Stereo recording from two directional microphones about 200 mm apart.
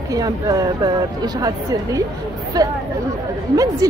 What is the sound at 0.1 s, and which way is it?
A woman's voice, 20° right (ahead or behind).